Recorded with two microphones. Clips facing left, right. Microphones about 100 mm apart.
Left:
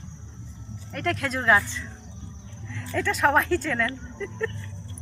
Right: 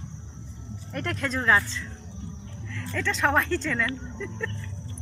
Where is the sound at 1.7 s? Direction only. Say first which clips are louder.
Right 1 dB; 20° left (ahead or behind); by 4.5 s centre (ahead or behind).